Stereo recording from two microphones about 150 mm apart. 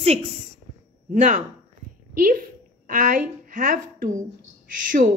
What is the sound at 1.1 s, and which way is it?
Speech, 55° right (ahead or behind).